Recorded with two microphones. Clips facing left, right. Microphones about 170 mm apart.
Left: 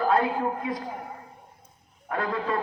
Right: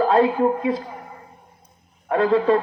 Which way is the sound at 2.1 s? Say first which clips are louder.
Right 11 dB; 25° right (ahead or behind).